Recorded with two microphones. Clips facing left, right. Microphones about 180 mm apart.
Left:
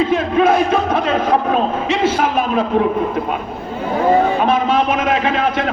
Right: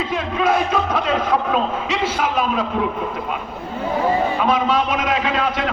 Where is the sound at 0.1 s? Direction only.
50° left (ahead or behind).